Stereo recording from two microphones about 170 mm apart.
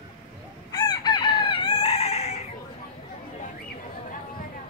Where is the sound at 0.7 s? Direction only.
25° left (ahead or behind).